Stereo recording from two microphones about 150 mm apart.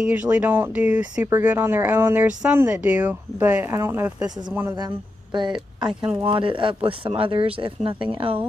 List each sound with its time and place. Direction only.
0.0 s speech: 10° right (ahead or behind)
4.7 s a woman's voice: 30° right (ahead or behind)